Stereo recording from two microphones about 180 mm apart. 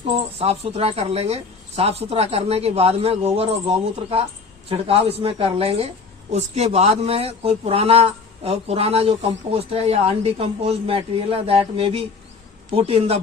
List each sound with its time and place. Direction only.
0.1 s a man's voice: 35° right (ahead or behind)